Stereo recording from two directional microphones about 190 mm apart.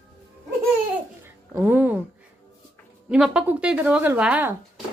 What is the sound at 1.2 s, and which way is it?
Music, 10° right (ahead or behind).